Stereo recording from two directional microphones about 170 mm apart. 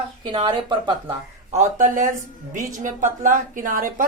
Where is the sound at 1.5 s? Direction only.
45° right (ahead or behind).